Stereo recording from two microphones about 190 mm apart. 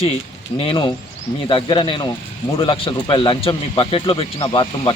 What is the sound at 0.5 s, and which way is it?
Speech, 30° left (ahead or behind).